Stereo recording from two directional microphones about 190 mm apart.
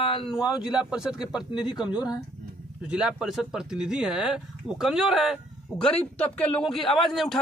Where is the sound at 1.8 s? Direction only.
20° left (ahead or behind).